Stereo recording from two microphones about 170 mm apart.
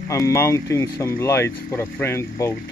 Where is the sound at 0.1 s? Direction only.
20° left (ahead or behind).